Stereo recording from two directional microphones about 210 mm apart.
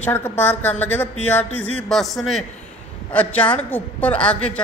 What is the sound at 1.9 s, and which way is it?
Speech, centre (ahead or behind).